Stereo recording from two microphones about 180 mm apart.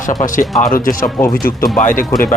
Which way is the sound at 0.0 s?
45° left (ahead or behind).